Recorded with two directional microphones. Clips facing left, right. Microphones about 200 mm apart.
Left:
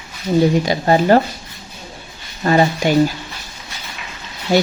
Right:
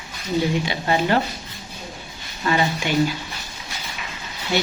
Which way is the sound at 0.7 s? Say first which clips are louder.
Left 7 dB; 40° left (ahead or behind).